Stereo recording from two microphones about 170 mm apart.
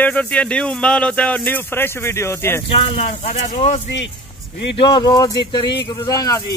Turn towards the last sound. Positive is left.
turn(degrees=20)  # may be behind; listen again after turning